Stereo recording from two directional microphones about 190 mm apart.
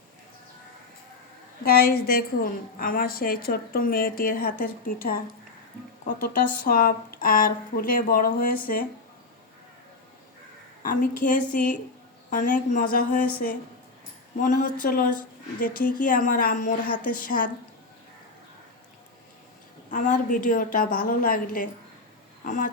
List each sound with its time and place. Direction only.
1.6 s a woman's voice: 55° left (ahead or behind)
10.8 s a woman's voice: 45° left (ahead or behind)
14.4 s a woman's voice: 45° left (ahead or behind)
19.9 s a woman's voice: 45° left (ahead or behind)